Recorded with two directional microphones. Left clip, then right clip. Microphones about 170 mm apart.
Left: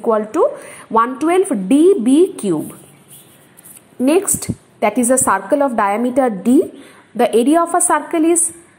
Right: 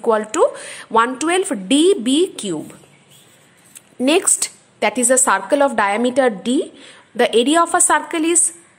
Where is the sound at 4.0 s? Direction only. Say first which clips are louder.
Left 2 dB; 25° right (ahead or behind).